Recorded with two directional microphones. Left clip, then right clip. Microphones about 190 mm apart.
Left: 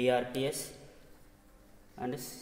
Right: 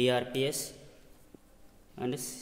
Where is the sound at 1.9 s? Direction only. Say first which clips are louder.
Right 2 dB; 65° right (ahead or behind).